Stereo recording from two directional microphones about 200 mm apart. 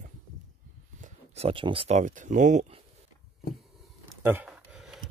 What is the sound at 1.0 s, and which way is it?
Speech, 30° right (ahead or behind).